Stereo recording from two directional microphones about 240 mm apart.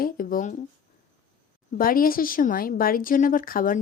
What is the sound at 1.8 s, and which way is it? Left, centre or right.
Speech, left.